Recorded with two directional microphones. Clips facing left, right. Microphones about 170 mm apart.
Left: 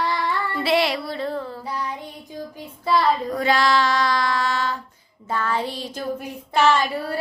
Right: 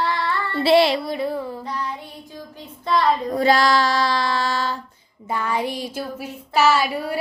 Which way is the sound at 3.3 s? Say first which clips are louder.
Right 2 dB; 35° right (ahead or behind).